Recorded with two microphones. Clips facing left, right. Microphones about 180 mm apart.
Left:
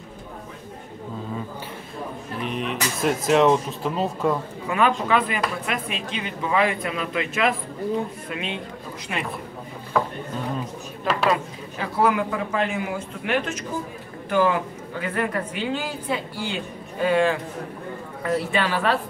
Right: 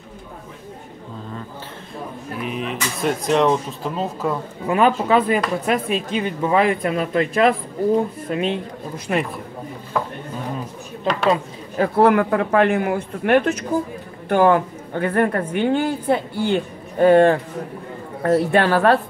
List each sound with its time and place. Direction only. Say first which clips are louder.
2.4 s speech: right 1 dB; centre (ahead or behind)
4.6 s a woman's voice: right 5 dB; 40° right (ahead or behind)
11.7 s a man's voice: right 7 dB; 50° right (ahead or behind)